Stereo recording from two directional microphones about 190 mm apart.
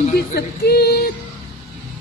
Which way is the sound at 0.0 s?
55° left (ahead or behind).